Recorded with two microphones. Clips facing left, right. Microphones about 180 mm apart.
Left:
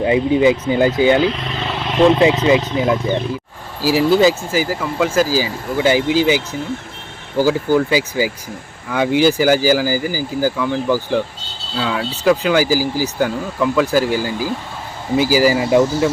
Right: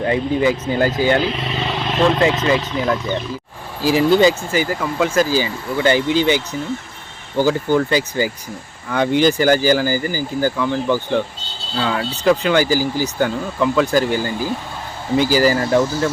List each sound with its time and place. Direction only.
0.0 s speech: 15° left (ahead or behind)
1.5 s speech: centre (ahead or behind); by 3.0 s 15° left (ahead or behind)
3.8 s speech: 5° left (ahead or behind)